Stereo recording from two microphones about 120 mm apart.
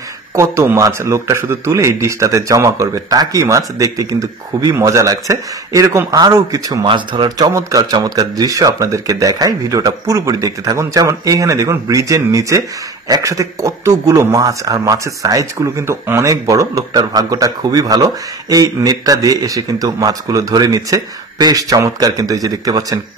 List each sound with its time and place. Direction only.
0.4 s a man's voice: 25° right (ahead or behind)
6.8 s a man's voice: 40° right (ahead or behind)